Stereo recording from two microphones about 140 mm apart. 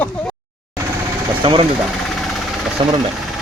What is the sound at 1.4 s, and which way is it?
Engine, 35° right (ahead or behind).